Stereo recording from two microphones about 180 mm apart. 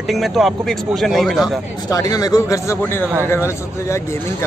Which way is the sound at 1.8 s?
20° left (ahead or behind).